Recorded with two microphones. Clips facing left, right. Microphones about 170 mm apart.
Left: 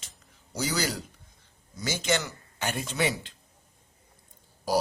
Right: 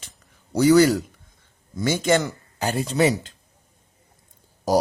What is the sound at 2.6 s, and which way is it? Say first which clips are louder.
Speech: right 8 dB; 35° right (ahead or behind).